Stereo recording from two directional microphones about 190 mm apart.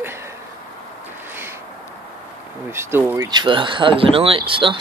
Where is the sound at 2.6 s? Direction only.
10° right (ahead or behind).